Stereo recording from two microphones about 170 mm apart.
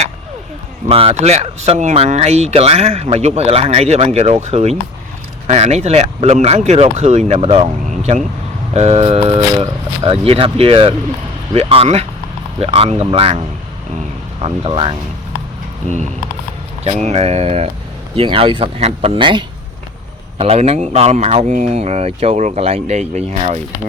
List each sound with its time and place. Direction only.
0.9 s speech: 35° right (ahead or behind)
14.4 s speech: 30° right (ahead or behind)
16.8 s speech: 35° right (ahead or behind)